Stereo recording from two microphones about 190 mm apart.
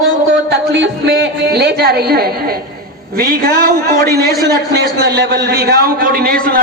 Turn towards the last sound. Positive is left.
turn(degrees=-50)  # may be behind; listen again after turning